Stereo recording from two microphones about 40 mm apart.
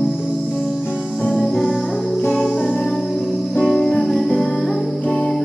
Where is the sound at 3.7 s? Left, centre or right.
Centre.